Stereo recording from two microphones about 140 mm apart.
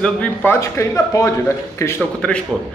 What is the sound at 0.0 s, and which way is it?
A man's voice, 10° left (ahead or behind).